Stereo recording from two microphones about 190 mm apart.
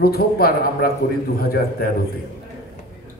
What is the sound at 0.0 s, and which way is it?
A man's voice, 55° left (ahead or behind).